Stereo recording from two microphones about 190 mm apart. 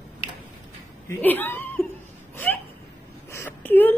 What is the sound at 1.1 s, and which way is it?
Speech, 10° left (ahead or behind).